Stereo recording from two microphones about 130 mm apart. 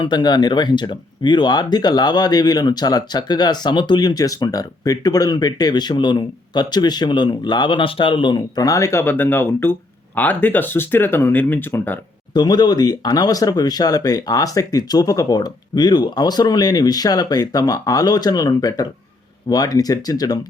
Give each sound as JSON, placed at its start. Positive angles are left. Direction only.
{"t": 0.0, "sound": "speech", "side_deg": 35}
{"t": 12.3, "sound": "speech", "side_deg": 35}